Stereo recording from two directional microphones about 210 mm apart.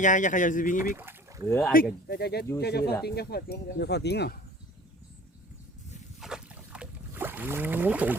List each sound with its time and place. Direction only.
0.0 s speech: 35° left (ahead or behind)
0.9 s a sound: 10° right (ahead or behind)
1.5 s speech: 10° left (ahead or behind)
1.7 s speech: 45° left (ahead or behind)
6.1 s boat: 5° right (ahead or behind)